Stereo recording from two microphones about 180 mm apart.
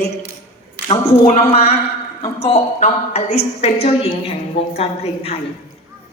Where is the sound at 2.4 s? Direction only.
35° left (ahead or behind).